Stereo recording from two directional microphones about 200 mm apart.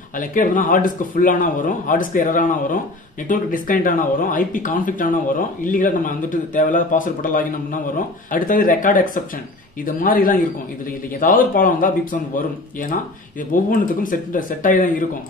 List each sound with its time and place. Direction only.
0.2 s a man's voice: 40° left (ahead or behind)
13.5 s a man's voice: 45° left (ahead or behind)